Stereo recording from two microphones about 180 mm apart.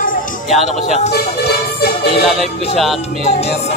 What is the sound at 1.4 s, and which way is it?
Music, 65° left (ahead or behind).